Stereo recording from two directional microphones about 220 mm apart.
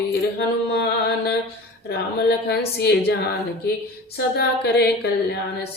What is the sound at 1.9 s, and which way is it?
A woman's voice, 50° left (ahead or behind).